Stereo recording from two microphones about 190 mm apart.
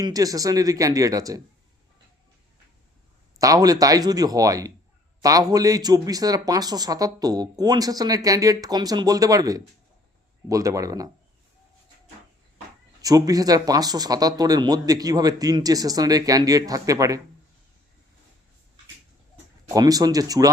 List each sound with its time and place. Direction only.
0.0 s speech: 20° right (ahead or behind)
3.3 s speech: 20° right (ahead or behind)
13.0 s speech: 20° right (ahead or behind)
19.7 s speech: 20° right (ahead or behind)